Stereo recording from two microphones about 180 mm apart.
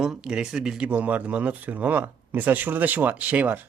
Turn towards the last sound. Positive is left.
turn(degrees=-10)  # may be behind; listen again after turning